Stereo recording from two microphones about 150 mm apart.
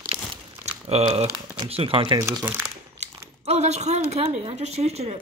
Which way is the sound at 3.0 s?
45° right (ahead or behind).